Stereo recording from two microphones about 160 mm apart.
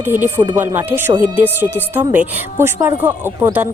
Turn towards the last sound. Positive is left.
turn(degrees=-15)  # may be behind; listen again after turning